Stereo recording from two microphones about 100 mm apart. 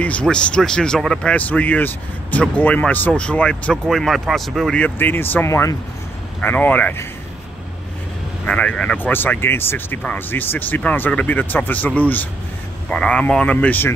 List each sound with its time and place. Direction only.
0.0 s speech: 10° left (ahead or behind)
4.7 s speech: 15° left (ahead or behind)
8.5 s speech: 10° left (ahead or behind)